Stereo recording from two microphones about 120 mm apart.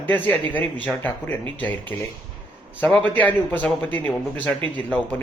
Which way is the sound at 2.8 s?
10° left (ahead or behind).